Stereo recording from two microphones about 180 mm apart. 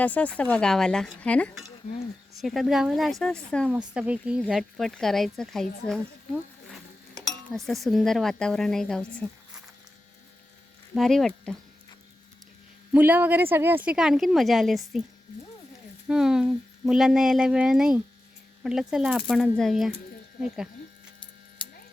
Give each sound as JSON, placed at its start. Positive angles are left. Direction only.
{"t": 0.0, "sound": "a woman's voice", "side_deg": 10}
{"t": 3.7, "sound": "a woman's voice", "side_deg": -5}
{"t": 7.1, "sound": "cutlery", "side_deg": -20}
{"t": 7.5, "sound": "a woman's voice", "side_deg": 0}
{"t": 10.9, "sound": "a woman's voice", "side_deg": 0}
{"t": 12.9, "sound": "a woman's voice", "side_deg": -10}
{"t": 16.0, "sound": "a woman's voice", "side_deg": -5}